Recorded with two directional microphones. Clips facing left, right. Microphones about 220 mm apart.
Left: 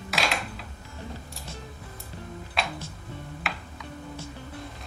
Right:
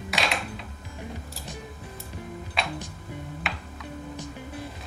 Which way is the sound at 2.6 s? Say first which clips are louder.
Even; centre (ahead or behind).